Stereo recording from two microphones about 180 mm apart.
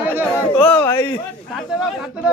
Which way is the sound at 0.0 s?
10° right (ahead or behind).